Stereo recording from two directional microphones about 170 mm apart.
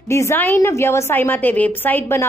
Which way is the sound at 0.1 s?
15° left (ahead or behind).